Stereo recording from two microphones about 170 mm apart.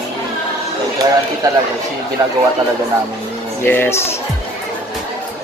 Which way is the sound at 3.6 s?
10° left (ahead or behind).